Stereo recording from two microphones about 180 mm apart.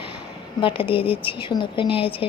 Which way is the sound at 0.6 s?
30° left (ahead or behind).